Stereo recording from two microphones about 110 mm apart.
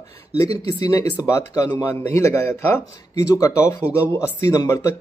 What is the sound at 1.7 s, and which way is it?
A man's voice, 15° left (ahead or behind).